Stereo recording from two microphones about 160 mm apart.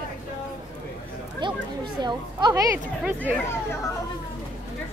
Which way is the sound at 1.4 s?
30° right (ahead or behind).